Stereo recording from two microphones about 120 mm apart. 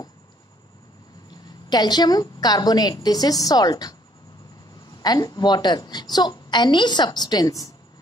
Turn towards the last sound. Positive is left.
turn(degrees=30)  # may be behind; listen again after turning